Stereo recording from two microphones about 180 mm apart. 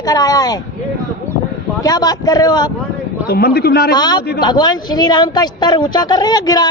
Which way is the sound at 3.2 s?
60° left (ahead or behind).